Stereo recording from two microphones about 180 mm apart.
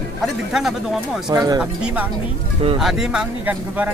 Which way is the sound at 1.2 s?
20° right (ahead or behind).